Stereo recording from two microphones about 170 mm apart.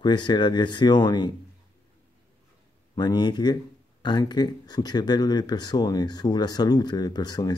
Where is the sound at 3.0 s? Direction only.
25° left (ahead or behind).